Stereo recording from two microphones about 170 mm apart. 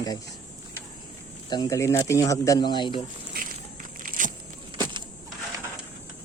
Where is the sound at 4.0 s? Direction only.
50° right (ahead or behind).